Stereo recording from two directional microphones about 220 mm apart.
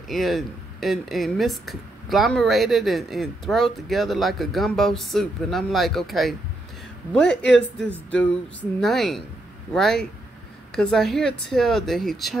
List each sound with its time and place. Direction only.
0.1 s speech: centre (ahead or behind)
8.1 s speech: 5° left (ahead or behind)